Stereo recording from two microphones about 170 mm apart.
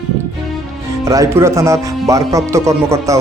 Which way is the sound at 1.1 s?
20° right (ahead or behind).